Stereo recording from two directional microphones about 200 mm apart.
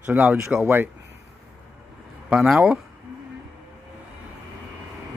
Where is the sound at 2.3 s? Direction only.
5° right (ahead or behind).